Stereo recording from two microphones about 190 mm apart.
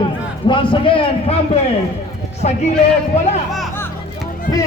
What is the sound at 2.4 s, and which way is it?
Speech, 45° left (ahead or behind).